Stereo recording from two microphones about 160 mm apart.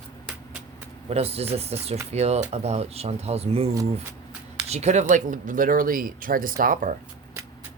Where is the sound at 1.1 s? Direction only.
40° right (ahead or behind).